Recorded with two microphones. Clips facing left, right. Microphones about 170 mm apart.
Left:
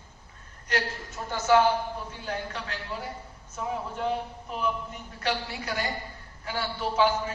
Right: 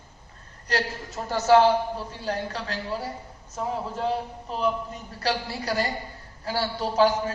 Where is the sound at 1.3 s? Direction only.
35° right (ahead or behind).